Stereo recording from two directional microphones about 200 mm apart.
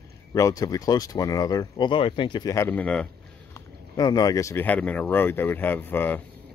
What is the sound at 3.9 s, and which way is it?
Speech, 20° left (ahead or behind).